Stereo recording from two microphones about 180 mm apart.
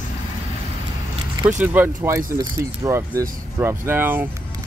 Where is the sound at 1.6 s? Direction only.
10° right (ahead or behind).